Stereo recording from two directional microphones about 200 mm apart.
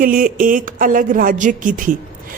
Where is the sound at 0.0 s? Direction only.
45° right (ahead or behind).